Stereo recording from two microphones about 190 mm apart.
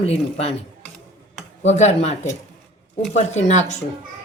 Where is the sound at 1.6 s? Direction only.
35° left (ahead or behind).